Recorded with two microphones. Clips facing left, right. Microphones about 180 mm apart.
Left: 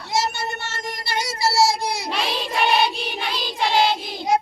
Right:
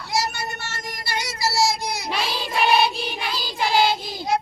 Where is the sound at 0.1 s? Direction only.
25° left (ahead or behind).